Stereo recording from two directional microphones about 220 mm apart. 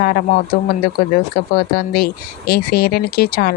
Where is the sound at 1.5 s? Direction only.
45° left (ahead or behind).